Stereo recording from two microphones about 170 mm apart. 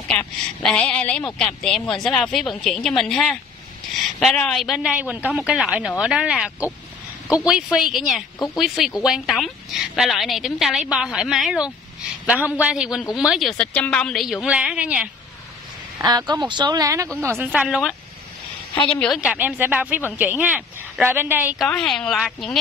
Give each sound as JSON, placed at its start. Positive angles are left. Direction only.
{"t": 0.1, "sound": "a woman's voice", "side_deg": 5}
{"t": 16.0, "sound": "speech", "side_deg": -25}
{"t": 17.5, "sound": "a woman's voice", "side_deg": -5}
{"t": 21.5, "sound": "a woman's voice", "side_deg": 5}